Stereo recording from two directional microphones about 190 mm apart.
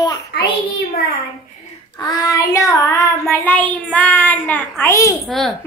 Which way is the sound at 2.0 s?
20° left (ahead or behind).